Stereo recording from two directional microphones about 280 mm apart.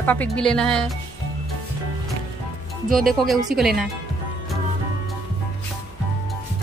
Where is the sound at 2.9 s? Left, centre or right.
Centre.